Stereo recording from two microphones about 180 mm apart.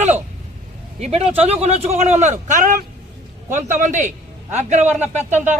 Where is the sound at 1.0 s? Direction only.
35° right (ahead or behind).